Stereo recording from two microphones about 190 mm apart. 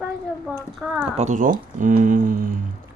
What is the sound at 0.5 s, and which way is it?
Speech, 5° right (ahead or behind).